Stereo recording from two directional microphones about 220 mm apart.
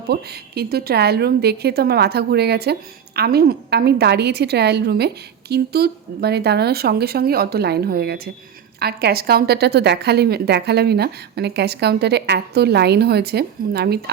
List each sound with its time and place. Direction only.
0.1 s a woman's voice: 45° right (ahead or behind)